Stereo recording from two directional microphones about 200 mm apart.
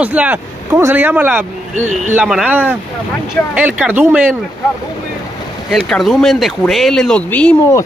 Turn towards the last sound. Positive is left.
turn(degrees=10)  # may be behind; listen again after turning